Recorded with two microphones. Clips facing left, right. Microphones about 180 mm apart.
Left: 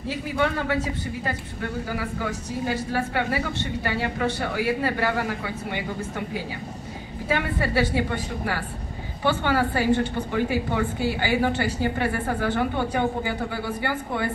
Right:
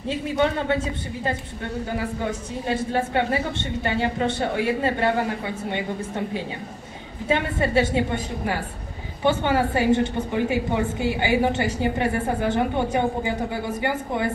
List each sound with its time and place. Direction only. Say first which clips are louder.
0.1 s a woman's voice: right 3 dB; 25° right (ahead or behind)